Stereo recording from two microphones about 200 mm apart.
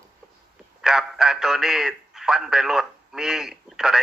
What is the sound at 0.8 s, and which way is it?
A man's voice, 5° right (ahead or behind).